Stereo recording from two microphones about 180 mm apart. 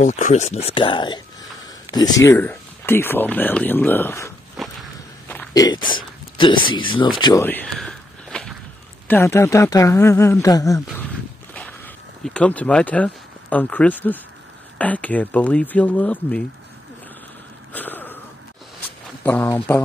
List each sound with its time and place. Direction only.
0.0 s speech: 40° left (ahead or behind); by 4.3 s 15° left (ahead or behind)
5.5 s speech: 20° left (ahead or behind)
7.4 s walk: 10° left (ahead or behind)
9.0 s speech: 10° left (ahead or behind)
12.4 s speech: 5° left (ahead or behind)
17.7 s a sound: 10° left (ahead or behind)
19.2 s speech: 10° left (ahead or behind)